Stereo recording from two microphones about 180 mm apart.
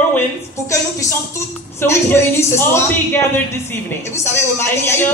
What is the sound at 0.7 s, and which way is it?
Speech, 15° left (ahead or behind).